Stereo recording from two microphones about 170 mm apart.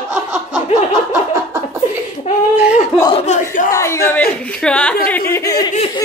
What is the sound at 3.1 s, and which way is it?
Battle cry, 45° left (ahead or behind).